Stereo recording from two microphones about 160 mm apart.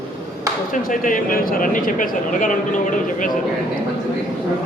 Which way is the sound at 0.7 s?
55° left (ahead or behind).